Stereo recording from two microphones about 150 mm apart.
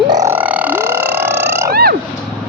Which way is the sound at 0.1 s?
20° right (ahead or behind).